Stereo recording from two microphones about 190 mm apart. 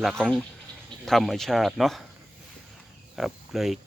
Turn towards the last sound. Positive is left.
turn(degrees=0)  # may be behind; listen again after turning